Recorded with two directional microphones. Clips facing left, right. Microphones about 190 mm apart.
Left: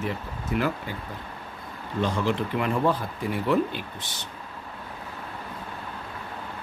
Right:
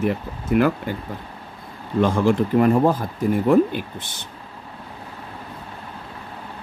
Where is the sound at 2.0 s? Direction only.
50° right (ahead or behind).